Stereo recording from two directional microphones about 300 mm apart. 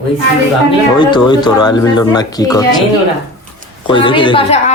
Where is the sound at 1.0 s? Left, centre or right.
Centre.